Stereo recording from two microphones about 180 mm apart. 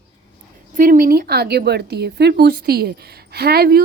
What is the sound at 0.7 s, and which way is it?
A woman's voice, 50° right (ahead or behind).